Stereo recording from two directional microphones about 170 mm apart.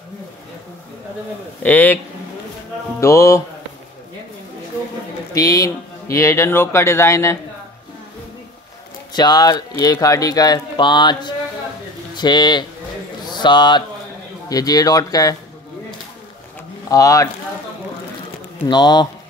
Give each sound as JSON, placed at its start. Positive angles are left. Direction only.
{"t": 1.6, "sound": "speech", "side_deg": 10}
{"t": 3.0, "sound": "speech", "side_deg": 15}
{"t": 5.3, "sound": "speech", "side_deg": 20}
{"t": 9.1, "sound": "speech", "side_deg": 25}
{"t": 16.9, "sound": "speech", "side_deg": 20}
{"t": 18.7, "sound": "speech", "side_deg": 25}